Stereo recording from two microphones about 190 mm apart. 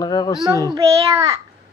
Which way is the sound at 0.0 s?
20° left (ahead or behind).